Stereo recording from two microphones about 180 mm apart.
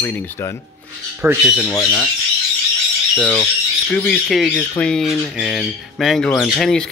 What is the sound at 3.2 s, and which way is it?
Speech, 10° left (ahead or behind).